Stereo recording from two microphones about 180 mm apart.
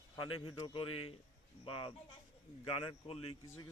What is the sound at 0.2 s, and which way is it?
Speech, 30° left (ahead or behind).